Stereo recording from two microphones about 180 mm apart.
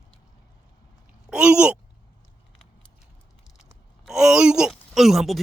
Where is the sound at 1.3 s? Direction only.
5° right (ahead or behind).